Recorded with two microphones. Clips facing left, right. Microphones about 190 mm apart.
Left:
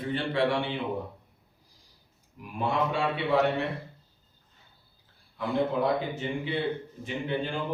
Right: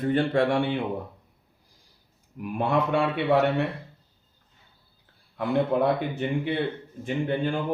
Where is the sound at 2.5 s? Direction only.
60° right (ahead or behind).